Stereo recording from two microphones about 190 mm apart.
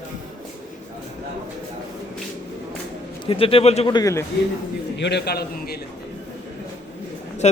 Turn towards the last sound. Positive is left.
turn(degrees=35)  # may be behind; listen again after turning